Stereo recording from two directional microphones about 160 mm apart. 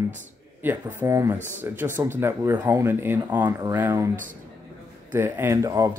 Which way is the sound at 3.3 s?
25° right (ahead or behind).